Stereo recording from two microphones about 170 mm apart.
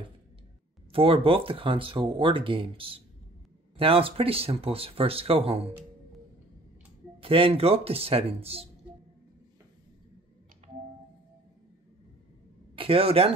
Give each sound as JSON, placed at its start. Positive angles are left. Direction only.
{"t": 0.9, "sound": "speech", "side_deg": -35}
{"t": 7.2, "sound": "speech", "side_deg": -30}
{"t": 12.7, "sound": "speech", "side_deg": -35}